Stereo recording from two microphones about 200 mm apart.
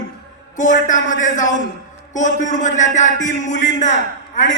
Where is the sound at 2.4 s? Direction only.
40° left (ahead or behind).